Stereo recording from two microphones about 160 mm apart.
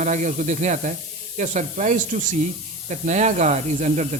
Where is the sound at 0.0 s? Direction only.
50° right (ahead or behind).